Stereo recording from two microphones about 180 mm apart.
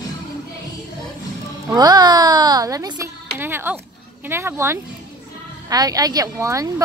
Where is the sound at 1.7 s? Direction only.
20° right (ahead or behind).